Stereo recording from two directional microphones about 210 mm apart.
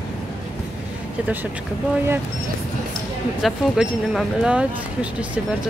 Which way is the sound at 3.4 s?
Centre (ahead or behind).